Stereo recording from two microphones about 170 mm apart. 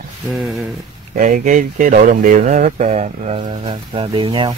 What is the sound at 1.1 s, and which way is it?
Speech, 50° right (ahead or behind).